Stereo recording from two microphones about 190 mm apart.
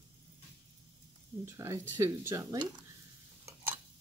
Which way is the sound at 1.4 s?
15° right (ahead or behind).